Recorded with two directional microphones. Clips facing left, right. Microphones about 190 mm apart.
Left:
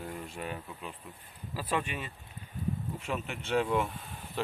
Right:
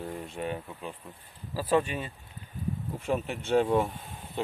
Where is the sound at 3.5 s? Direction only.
30° right (ahead or behind).